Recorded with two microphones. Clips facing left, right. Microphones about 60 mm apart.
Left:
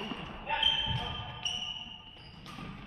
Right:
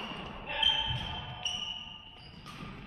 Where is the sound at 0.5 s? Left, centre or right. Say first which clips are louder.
Even; centre.